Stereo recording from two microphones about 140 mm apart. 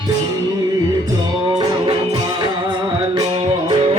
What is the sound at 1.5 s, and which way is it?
Music, 30° right (ahead or behind).